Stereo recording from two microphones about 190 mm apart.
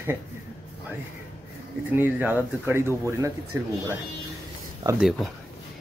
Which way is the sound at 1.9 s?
10° right (ahead or behind).